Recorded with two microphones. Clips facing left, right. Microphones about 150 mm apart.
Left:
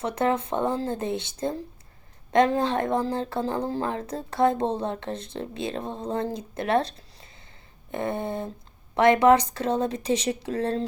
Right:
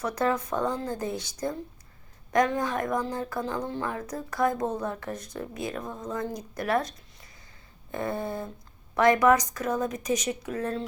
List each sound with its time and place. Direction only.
0.0 s speech: 25° left (ahead or behind)